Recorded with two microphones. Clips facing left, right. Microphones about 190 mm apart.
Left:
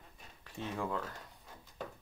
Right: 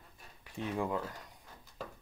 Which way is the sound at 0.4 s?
15° right (ahead or behind).